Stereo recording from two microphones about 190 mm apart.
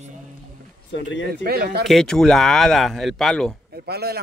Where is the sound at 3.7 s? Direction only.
55° right (ahead or behind).